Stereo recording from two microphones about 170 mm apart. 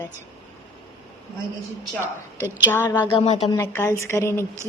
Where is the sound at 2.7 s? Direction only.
10° left (ahead or behind).